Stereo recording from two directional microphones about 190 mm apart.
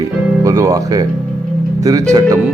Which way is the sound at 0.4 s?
15° right (ahead or behind).